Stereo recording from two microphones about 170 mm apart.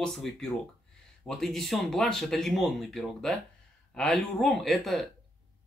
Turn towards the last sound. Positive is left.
turn(degrees=0)  # may be behind; listen again after turning